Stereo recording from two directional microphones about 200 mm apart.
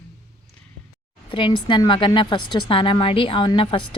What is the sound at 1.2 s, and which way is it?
A woman's voice, 25° left (ahead or behind).